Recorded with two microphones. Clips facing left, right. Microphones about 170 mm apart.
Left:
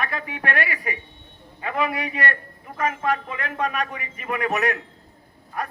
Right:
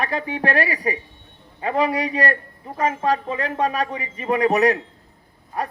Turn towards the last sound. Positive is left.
turn(degrees=-30)  # may be behind; listen again after turning